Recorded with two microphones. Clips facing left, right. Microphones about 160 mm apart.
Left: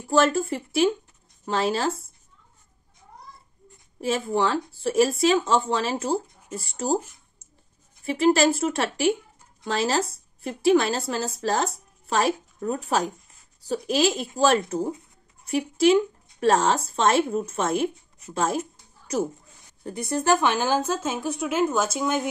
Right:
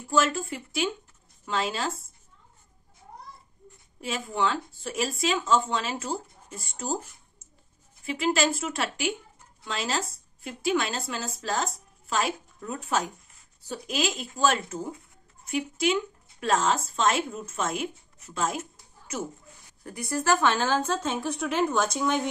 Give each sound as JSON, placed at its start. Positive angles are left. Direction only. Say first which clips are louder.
{"t": 0.1, "sound": "speech", "louder": "left 5 dB", "side_deg": 40}
{"t": 4.0, "sound": "speech", "louder": "left 5 dB", "side_deg": 35}
{"t": 8.0, "sound": "speech", "louder": "left 6 dB", "side_deg": 40}
{"t": 19.8, "sound": "a woman's voice", "louder": "left 4 dB", "side_deg": 25}